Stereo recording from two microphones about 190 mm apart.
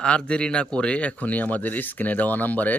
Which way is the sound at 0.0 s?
5° left (ahead or behind).